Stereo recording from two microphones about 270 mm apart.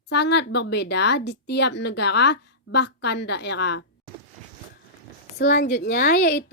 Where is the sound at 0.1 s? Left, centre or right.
Left.